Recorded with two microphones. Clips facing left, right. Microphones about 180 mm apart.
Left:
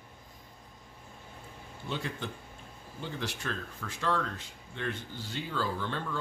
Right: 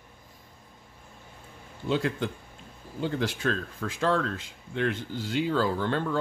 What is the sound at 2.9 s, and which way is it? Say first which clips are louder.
Speech: right 9 dB; 65° right (ahead or behind).